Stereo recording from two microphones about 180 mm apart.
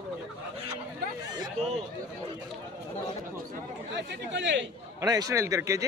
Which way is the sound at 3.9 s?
80° right.